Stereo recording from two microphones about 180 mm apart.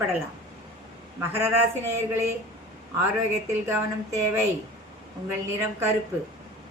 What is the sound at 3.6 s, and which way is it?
Speech, 15° right (ahead or behind).